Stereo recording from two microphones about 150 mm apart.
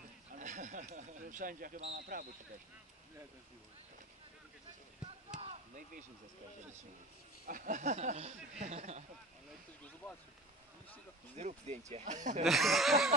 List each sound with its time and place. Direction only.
0.3 s speech: 55° right (ahead or behind); by 2.2 s 75° right (ahead or behind)
5.4 s chop: 45° right (ahead or behind)
7.4 s speech: 65° right (ahead or behind); by 9.0 s 50° right (ahead or behind)
11.3 s speech: 50° right (ahead or behind)
12.4 s a sound: centre (ahead or behind)